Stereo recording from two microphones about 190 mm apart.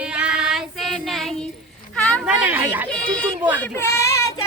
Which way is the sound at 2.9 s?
5° left (ahead or behind).